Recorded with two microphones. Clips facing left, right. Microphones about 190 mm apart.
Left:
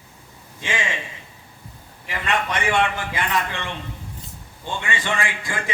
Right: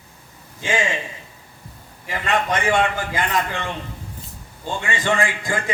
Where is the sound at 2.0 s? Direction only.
45° right (ahead or behind).